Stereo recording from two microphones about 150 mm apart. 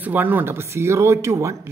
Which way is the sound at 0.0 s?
10° right (ahead or behind).